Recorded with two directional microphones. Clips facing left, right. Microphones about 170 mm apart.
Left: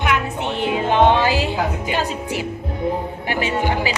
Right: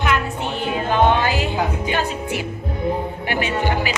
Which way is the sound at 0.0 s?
25° left (ahead or behind).